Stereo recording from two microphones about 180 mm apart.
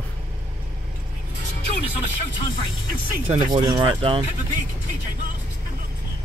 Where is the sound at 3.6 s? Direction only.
20° right (ahead or behind).